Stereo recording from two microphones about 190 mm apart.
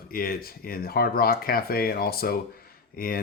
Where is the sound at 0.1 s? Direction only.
50° left (ahead or behind).